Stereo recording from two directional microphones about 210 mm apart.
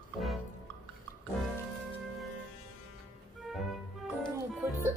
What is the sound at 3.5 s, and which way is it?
Music, centre (ahead or behind).